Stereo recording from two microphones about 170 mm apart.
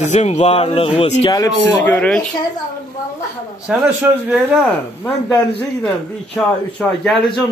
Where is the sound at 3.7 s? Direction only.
10° right (ahead or behind).